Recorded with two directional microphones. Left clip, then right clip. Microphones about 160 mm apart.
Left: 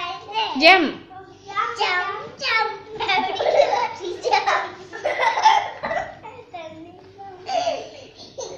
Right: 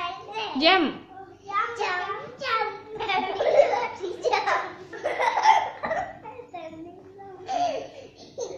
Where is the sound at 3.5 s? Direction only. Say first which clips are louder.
Left 2 dB; 15° right (ahead or behind).